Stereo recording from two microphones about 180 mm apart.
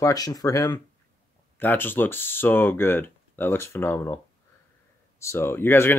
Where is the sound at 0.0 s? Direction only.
20° left (ahead or behind).